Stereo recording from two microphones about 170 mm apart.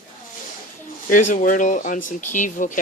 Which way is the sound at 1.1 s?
50° left (ahead or behind).